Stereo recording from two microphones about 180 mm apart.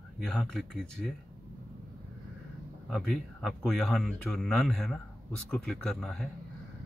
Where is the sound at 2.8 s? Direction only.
Centre (ahead or behind).